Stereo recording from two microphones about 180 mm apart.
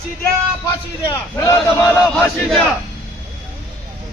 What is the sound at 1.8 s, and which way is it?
Crowd, 5° left (ahead or behind).